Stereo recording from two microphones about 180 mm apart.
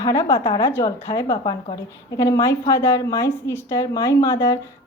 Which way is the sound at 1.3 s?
30° left (ahead or behind).